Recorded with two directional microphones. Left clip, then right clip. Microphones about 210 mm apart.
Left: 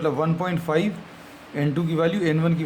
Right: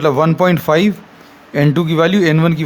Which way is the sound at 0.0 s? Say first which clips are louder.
Right 11 dB; 45° right (ahead or behind).